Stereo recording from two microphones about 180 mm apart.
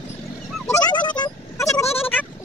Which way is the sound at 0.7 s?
25° left (ahead or behind).